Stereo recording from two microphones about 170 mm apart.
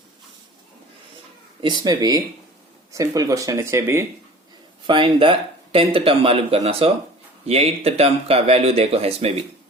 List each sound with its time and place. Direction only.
1.6 s speech: 25° right (ahead or behind)
4.9 s speech: 30° right (ahead or behind)